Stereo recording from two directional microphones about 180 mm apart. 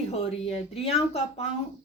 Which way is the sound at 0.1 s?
35° left (ahead or behind).